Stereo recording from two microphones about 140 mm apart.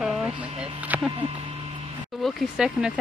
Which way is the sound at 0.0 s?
5° right (ahead or behind).